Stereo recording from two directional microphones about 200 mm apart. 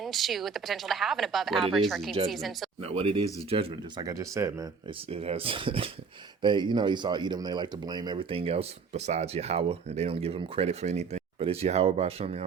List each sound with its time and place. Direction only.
0.0 s a woman's voice: centre (ahead or behind)
2.8 s speech: 30° right (ahead or behind)
5.1 s speech: 30° right (ahead or behind)